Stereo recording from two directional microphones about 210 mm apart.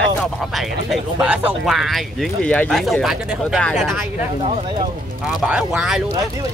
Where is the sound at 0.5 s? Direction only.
5° right (ahead or behind).